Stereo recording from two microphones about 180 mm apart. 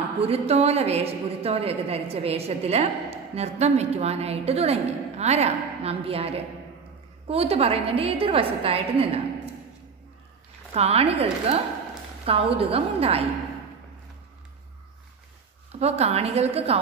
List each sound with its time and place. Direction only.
0.2 s a woman's voice: 35° right (ahead or behind)
10.7 s a woman's voice: 35° right (ahead or behind)
12.3 s a woman's voice: 30° right (ahead or behind)
15.7 s a woman's voice: 35° right (ahead or behind)